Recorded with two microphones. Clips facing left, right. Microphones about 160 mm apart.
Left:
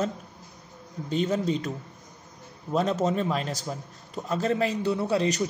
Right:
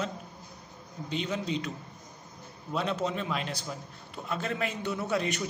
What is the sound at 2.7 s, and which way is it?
A man's voice, 40° left (ahead or behind).